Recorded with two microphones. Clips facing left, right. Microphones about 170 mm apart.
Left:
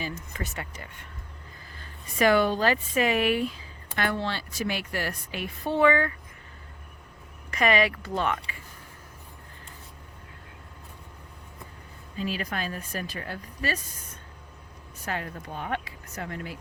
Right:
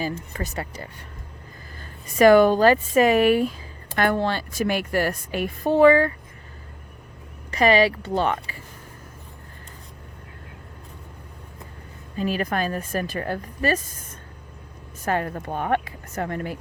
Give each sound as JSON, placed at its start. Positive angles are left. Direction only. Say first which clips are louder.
{"t": 0.0, "sound": "a woman's voice", "louder": "right 6 dB", "side_deg": -35}
{"t": 7.5, "sound": "speech", "louder": "right 6 dB", "side_deg": -30}
{"t": 12.1, "sound": "a woman's voice", "louder": "right 7 dB", "side_deg": -50}